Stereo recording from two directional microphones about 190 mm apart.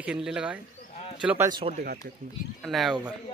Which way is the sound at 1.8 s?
50° right (ahead or behind).